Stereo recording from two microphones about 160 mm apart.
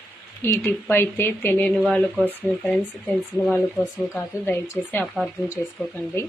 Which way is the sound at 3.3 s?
5° left (ahead or behind).